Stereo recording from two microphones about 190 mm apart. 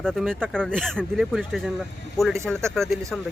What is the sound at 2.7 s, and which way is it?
Speech, centre (ahead or behind).